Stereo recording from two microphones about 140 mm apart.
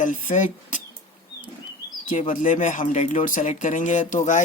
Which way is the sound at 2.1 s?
65° left (ahead or behind).